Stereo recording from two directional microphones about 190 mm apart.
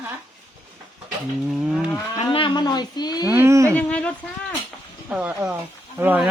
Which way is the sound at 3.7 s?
5° left (ahead or behind).